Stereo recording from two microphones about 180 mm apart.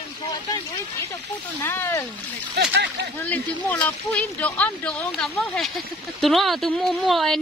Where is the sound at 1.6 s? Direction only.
15° left (ahead or behind).